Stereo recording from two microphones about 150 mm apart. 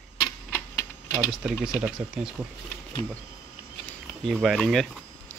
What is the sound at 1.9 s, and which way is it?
Speech, 5° right (ahead or behind).